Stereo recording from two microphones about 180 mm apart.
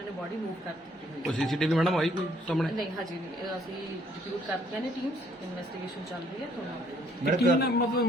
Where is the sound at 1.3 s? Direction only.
Centre (ahead or behind).